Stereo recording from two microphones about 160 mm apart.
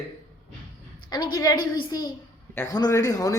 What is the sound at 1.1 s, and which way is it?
Speech, 25° left (ahead or behind).